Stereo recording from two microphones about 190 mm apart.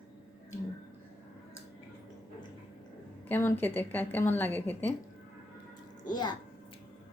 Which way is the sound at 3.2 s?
10° left (ahead or behind).